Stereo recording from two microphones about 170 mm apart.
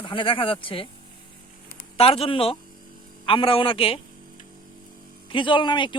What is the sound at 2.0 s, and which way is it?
Speech, 35° left (ahead or behind).